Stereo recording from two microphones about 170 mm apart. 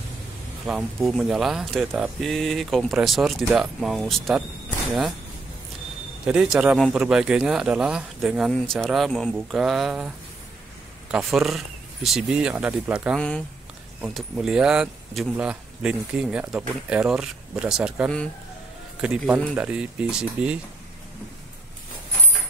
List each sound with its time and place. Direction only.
0.7 s speech: centre (ahead or behind)
6.2 s speech: 5° right (ahead or behind)